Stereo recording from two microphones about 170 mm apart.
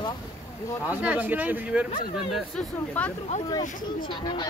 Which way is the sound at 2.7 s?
10° left (ahead or behind).